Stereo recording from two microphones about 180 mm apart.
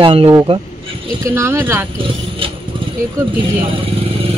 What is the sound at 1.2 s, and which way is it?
Speech, 15° right (ahead or behind).